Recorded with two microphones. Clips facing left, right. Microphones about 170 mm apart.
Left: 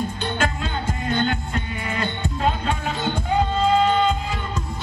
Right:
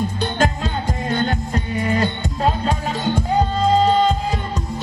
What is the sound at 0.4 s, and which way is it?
Music, 40° right (ahead or behind).